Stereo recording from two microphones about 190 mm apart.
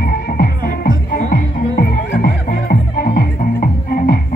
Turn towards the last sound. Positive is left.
turn(degrees=50)  # may be behind; listen again after turning